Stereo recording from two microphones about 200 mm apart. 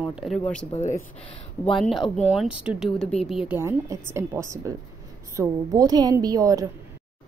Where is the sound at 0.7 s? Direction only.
35° left (ahead or behind).